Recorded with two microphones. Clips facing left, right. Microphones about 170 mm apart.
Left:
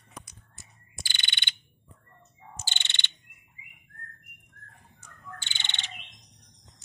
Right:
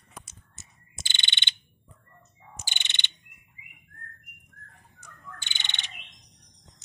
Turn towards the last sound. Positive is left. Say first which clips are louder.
# left 1 dB
turn(degrees=-15)  # may be behind; listen again after turning